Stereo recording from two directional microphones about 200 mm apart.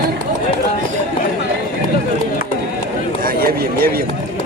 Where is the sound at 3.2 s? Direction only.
45° right (ahead or behind).